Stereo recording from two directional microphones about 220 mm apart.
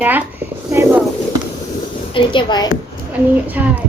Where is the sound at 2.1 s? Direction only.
20° left (ahead or behind).